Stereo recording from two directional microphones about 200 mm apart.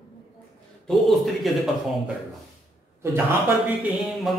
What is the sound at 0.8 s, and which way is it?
Speech, centre (ahead or behind).